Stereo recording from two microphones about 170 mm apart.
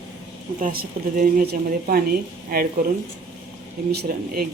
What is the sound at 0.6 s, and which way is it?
A woman's voice, 55° right (ahead or behind).